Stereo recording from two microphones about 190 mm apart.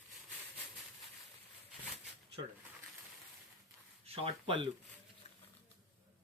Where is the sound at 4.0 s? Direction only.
30° right (ahead or behind).